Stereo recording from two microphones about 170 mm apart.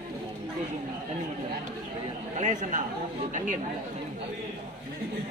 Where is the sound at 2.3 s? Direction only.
50° right (ahead or behind).